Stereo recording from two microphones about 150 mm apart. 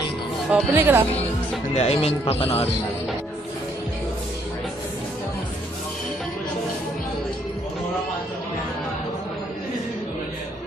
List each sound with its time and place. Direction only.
0.5 s speech: 15° right (ahead or behind)
1.8 s a man's voice: 45° left (ahead or behind)